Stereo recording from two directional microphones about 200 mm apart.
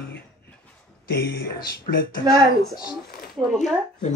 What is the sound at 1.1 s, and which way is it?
Speech, 50° left (ahead or behind).